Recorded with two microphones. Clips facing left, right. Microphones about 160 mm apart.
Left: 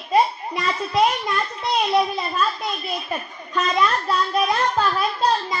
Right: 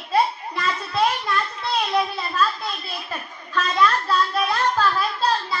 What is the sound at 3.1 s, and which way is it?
A woman's voice, 20° left (ahead or behind).